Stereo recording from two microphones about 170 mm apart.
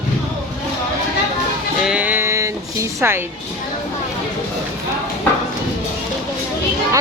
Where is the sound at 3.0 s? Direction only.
15° right (ahead or behind).